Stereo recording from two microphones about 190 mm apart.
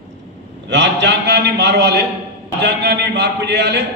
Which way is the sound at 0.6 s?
70° right (ahead or behind).